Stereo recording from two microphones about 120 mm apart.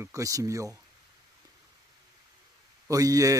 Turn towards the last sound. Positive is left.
turn(degrees=-30)  # may be behind; listen again after turning